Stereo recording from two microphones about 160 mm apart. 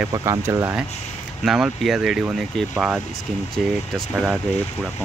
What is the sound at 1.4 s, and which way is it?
Speech, centre (ahead or behind).